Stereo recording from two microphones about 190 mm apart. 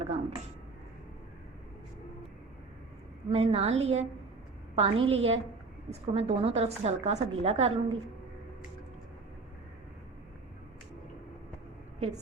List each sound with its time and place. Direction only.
0.0 s a sound: 35° right (ahead or behind)
3.2 s a woman's voice: 30° right (ahead or behind)
11.9 s a woman's voice: 35° right (ahead or behind)